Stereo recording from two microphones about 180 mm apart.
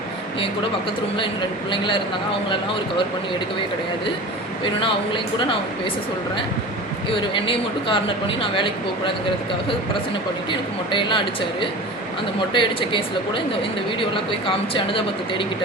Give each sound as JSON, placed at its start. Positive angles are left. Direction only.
{"t": 1.7, "sound": "a woman's voice", "side_deg": 25}
{"t": 4.6, "sound": "a woman's voice", "side_deg": 30}
{"t": 7.1, "sound": "a woman's voice", "side_deg": 30}
{"t": 10.5, "sound": "a woman's voice", "side_deg": 25}